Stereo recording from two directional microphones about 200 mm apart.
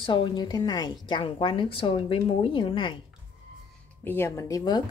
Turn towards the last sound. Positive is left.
turn(degrees=20)  # may be behind; listen again after turning